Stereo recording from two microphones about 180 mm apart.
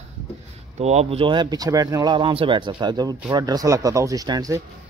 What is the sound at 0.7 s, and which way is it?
Speech, 35° right (ahead or behind).